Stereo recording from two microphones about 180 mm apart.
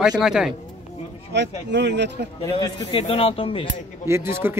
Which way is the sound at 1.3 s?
75° right (ahead or behind).